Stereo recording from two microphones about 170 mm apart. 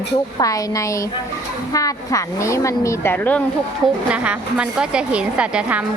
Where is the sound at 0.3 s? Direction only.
20° left (ahead or behind).